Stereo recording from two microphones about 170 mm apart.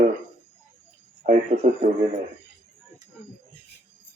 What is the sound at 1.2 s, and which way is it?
Speech, 50° right (ahead or behind).